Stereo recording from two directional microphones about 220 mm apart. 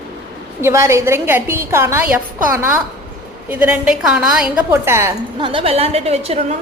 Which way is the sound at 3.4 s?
5° right (ahead or behind).